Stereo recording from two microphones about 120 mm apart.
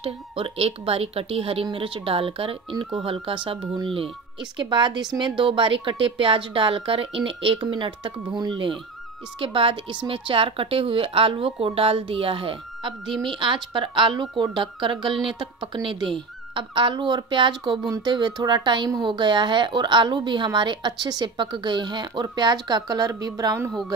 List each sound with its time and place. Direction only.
0.0 s a woman's voice: 50° right (ahead or behind); by 23.7 s 30° right (ahead or behind)